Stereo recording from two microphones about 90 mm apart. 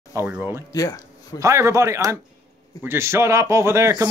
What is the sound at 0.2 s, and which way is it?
Speech, 35° right (ahead or behind).